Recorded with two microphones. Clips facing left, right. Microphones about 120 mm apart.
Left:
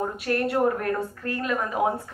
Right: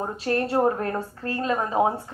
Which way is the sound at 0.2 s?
30° right (ahead or behind).